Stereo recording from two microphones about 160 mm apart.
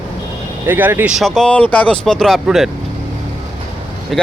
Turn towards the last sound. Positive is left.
turn(degrees=0)  # may be behind; listen again after turning